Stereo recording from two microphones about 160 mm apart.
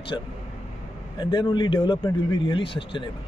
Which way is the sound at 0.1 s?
20° left (ahead or behind).